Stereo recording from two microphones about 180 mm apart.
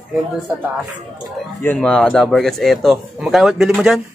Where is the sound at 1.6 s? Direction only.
5° left (ahead or behind).